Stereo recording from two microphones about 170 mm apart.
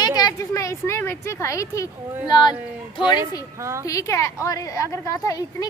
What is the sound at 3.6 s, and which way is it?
Speech, 15° right (ahead or behind).